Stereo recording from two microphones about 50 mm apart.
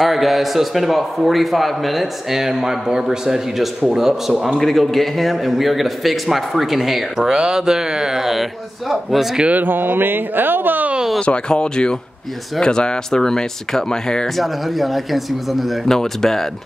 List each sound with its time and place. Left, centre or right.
0.0 s a man's voice: centre
4.6 s a man's voice: centre
9.5 s speech: right
11.1 s speech: centre